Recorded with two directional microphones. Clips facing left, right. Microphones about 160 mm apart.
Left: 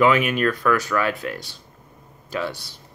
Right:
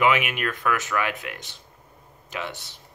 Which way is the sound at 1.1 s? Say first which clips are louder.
Left 6 dB; 40° left (ahead or behind).